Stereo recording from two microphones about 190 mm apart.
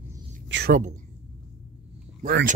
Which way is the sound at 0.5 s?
70° right (ahead or behind).